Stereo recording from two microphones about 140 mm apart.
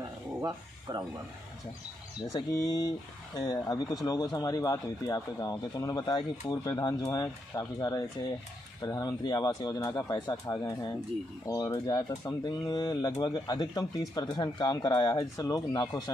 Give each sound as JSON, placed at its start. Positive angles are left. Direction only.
{"t": 0.4, "sound": "speech", "side_deg": -30}
{"t": 2.3, "sound": "speech", "side_deg": 25}